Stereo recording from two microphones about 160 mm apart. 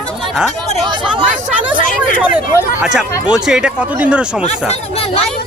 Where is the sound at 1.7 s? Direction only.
55° left (ahead or behind).